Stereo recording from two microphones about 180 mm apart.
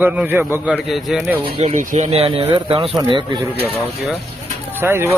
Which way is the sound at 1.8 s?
40° right (ahead or behind).